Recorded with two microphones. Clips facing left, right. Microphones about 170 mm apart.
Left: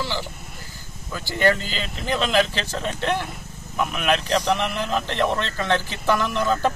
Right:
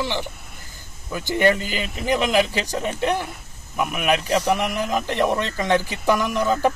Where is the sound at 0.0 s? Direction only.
20° right (ahead or behind).